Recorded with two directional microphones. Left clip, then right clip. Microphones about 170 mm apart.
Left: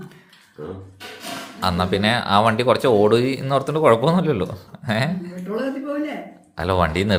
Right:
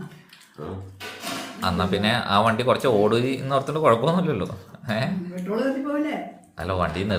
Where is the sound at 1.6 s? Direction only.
25° left (ahead or behind).